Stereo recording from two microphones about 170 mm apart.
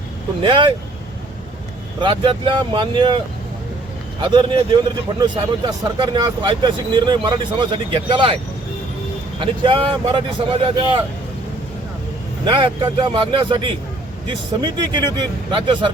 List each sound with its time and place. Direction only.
0.4 s speech: 30° right (ahead or behind)
2.0 s speech: 30° right (ahead or behind)
4.2 s speech: 30° right (ahead or behind)
9.4 s speech: 30° right (ahead or behind)
12.5 s speech: 30° right (ahead or behind)